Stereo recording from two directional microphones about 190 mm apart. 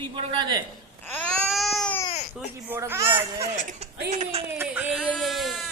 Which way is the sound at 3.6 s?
40° right (ahead or behind).